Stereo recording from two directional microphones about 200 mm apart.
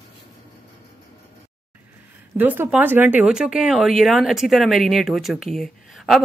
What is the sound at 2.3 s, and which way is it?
Speech, 10° right (ahead or behind).